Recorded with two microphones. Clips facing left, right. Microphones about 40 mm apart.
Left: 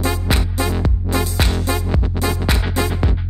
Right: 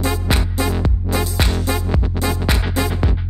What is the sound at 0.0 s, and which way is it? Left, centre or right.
Music, centre.